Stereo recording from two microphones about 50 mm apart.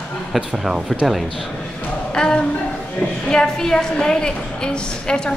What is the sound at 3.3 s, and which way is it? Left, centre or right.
A woman's voice, centre.